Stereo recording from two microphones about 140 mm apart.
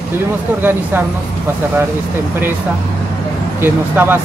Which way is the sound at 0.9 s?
15° right (ahead or behind).